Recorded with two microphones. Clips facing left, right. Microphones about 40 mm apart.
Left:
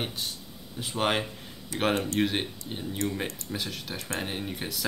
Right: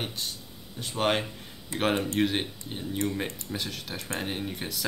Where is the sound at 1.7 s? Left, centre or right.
Right.